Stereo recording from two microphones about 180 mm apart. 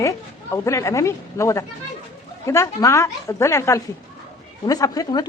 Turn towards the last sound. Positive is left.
turn(degrees=20)  # may be behind; listen again after turning